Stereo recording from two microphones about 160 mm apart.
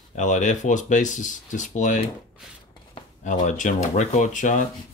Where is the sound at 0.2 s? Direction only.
50° left (ahead or behind).